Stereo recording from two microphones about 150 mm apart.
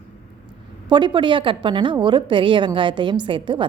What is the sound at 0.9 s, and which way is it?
A woman's voice, 30° right (ahead or behind).